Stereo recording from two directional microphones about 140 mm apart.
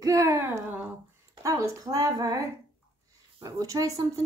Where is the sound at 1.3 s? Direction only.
20° right (ahead or behind).